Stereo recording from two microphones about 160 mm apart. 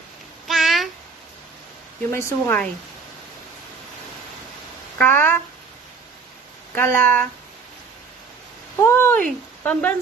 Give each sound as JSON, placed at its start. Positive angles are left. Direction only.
{"t": 0.5, "sound": "meow", "side_deg": 0}
{"t": 2.0, "sound": "speech", "side_deg": 15}
{"t": 4.9, "sound": "a sound", "side_deg": 10}
{"t": 6.7, "sound": "speech", "side_deg": 10}
{"t": 8.7, "sound": "a sound", "side_deg": 15}
{"t": 9.6, "sound": "speech", "side_deg": 10}